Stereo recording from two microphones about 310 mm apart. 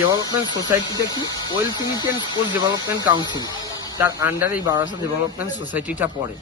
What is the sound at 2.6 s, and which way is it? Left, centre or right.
Speech, centre.